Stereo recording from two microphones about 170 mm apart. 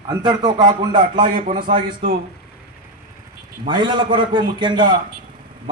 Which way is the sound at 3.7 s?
25° right (ahead or behind).